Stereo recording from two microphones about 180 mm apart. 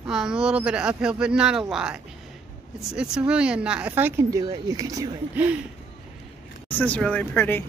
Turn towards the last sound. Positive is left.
turn(degrees=10)  # may be behind; listen again after turning